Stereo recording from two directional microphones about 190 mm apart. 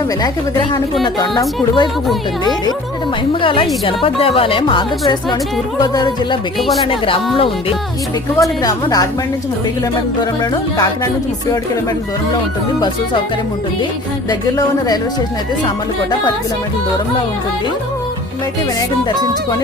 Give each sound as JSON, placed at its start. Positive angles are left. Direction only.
{"t": 0.2, "sound": "a woman's voice", "side_deg": 20}
{"t": 3.4, "sound": "a woman's voice", "side_deg": 25}
{"t": 8.4, "sound": "a woman's voice", "side_deg": 20}
{"t": 10.8, "sound": "music", "side_deg": 15}
{"t": 14.3, "sound": "a woman's voice", "side_deg": 20}